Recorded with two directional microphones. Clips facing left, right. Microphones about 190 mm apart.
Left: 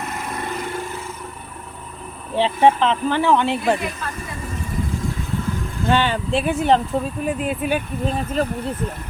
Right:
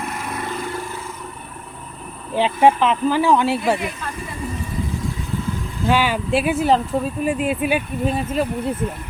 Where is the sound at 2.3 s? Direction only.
30° left (ahead or behind).